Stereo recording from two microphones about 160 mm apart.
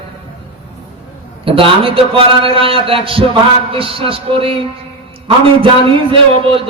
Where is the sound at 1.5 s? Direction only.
35° right (ahead or behind).